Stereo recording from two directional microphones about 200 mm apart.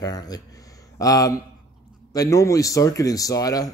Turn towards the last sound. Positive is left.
turn(degrees=15)  # may be behind; listen again after turning